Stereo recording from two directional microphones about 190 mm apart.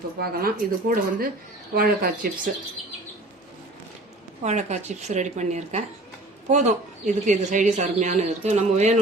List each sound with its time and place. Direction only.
0.2 s speech: 50° right (ahead or behind)
4.4 s speech: 40° right (ahead or behind)